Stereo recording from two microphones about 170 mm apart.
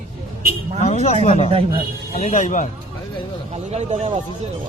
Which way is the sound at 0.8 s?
40° left (ahead or behind).